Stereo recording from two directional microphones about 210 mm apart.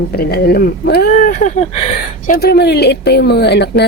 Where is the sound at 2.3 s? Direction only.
50° left (ahead or behind).